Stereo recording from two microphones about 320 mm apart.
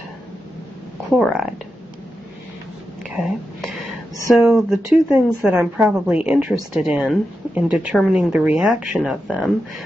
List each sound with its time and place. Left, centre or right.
1.1 s speech: centre
3.0 s speech: centre